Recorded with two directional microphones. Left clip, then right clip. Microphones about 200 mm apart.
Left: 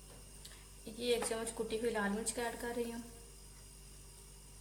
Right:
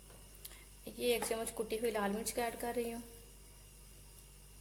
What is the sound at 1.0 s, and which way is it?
A woman's voice, 25° right (ahead or behind).